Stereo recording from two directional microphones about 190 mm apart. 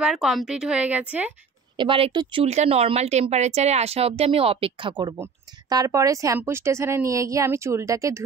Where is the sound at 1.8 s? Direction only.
30° right (ahead or behind).